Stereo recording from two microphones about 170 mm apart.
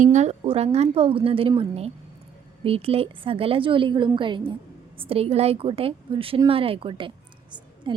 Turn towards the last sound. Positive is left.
turn(degrees=-25)  # may be behind; listen again after turning